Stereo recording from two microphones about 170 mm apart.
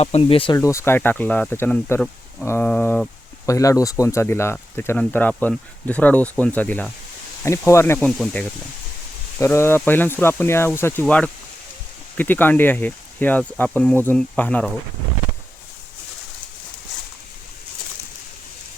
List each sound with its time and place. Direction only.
0.0 s speech: 35° left (ahead or behind)
0.5 s speech: 20° left (ahead or behind)
7.9 s speech: 5° left (ahead or behind)